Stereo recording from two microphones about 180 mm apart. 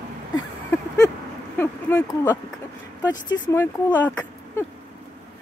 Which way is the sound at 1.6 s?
15° left (ahead or behind).